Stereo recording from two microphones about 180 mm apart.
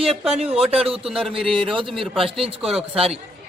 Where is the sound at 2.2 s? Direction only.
30° right (ahead or behind).